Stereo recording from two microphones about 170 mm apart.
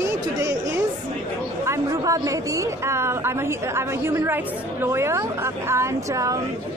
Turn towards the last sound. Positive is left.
turn(degrees=-15)  # may be behind; listen again after turning